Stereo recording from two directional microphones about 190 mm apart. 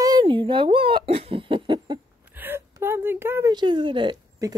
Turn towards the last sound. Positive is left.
turn(degrees=-20)  # may be behind; listen again after turning